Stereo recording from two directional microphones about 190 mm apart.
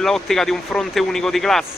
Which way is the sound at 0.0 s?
Centre (ahead or behind).